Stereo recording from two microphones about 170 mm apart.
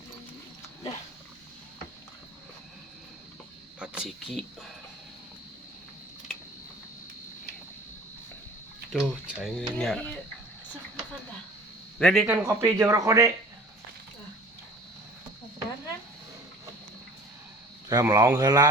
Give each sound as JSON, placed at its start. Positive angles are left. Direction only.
{"t": 3.8, "sound": "speech", "side_deg": -5}
{"t": 8.9, "sound": "speech", "side_deg": 0}
{"t": 11.9, "sound": "speech", "side_deg": 0}
{"t": 12.3, "sound": "speech", "side_deg": -15}
{"t": 17.8, "sound": "speech", "side_deg": -20}